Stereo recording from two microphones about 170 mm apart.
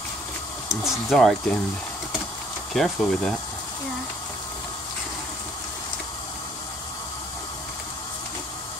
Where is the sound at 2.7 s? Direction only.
Centre (ahead or behind).